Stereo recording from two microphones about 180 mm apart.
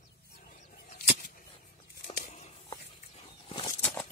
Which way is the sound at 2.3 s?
35° left (ahead or behind).